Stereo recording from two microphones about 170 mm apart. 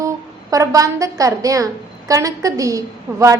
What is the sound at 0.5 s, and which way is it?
A woman's voice, 20° right (ahead or behind).